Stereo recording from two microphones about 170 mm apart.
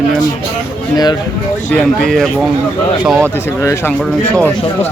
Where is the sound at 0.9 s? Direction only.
25° left (ahead or behind).